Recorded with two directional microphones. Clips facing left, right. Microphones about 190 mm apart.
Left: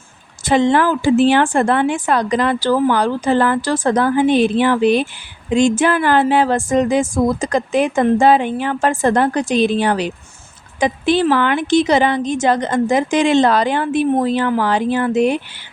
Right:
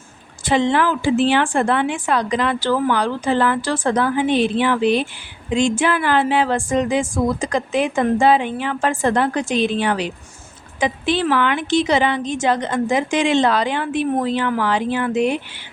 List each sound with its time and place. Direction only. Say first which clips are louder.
0.4 s a woman's voice: left 3 dB; 45° left (ahead or behind)